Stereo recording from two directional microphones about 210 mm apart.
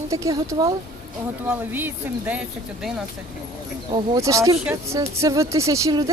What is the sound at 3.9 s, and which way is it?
Speech, 15° right (ahead or behind).